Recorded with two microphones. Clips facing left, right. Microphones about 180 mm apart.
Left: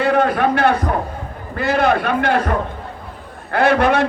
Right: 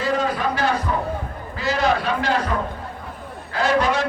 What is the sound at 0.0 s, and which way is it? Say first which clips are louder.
A man's voice: left 6 dB; 60° left (ahead or behind).